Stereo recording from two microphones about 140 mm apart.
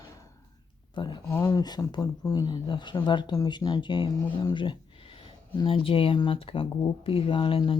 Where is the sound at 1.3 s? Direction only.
25° left (ahead or behind).